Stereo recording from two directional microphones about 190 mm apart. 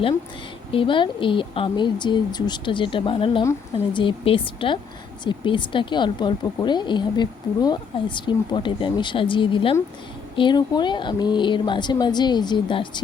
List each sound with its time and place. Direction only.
0.7 s speech: 25° left (ahead or behind)